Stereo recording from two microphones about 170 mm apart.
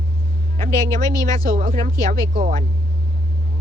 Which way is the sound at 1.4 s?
55° right (ahead or behind).